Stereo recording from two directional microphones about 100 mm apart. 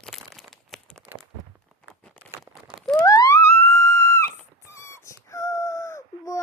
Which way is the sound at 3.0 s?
35° left (ahead or behind).